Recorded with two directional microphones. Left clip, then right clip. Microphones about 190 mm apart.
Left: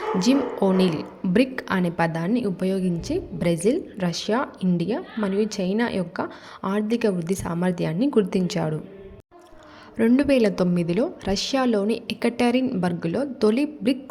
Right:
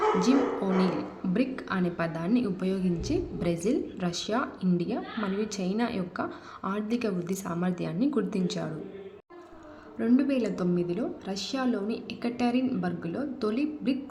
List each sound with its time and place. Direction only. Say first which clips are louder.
0.2 s a woman's voice: left 4 dB; 35° left (ahead or behind)
10.0 s a woman's voice: left 8 dB; 40° left (ahead or behind)